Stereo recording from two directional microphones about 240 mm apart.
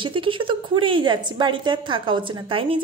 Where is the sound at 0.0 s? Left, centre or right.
Right.